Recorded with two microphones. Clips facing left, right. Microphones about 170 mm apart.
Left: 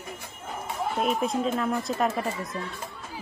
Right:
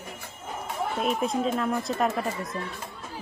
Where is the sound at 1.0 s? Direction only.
Centre (ahead or behind).